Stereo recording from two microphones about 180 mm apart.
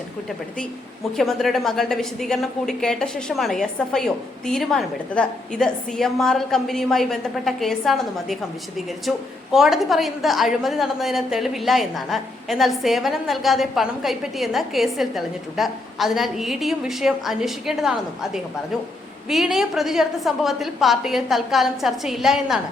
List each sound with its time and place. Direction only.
1.1 s a woman's voice: centre (ahead or behind)
19.3 s a woman's voice: centre (ahead or behind)